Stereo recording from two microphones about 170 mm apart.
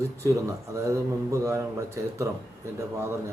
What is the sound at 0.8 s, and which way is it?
A man's voice, 15° right (ahead or behind).